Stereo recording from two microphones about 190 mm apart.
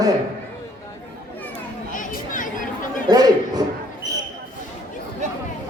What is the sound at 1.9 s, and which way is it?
Chatter, 45° left (ahead or behind).